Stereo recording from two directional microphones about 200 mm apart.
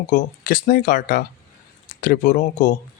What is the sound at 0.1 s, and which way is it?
Speech, 45° left (ahead or behind).